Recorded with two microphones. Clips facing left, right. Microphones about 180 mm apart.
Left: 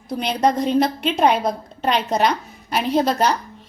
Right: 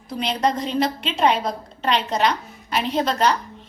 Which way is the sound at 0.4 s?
50° left (ahead or behind).